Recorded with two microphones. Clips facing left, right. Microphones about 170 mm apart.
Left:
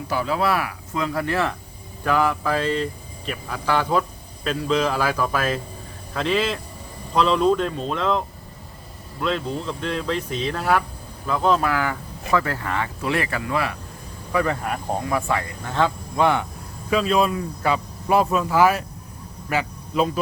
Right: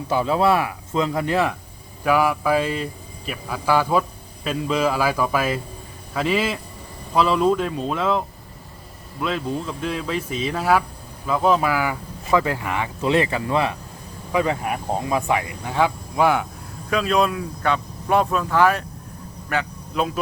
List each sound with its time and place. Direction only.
0.1 s speech: 25° right (ahead or behind); by 8.2 s 5° right (ahead or behind)
9.2 s speech: 5° right (ahead or behind)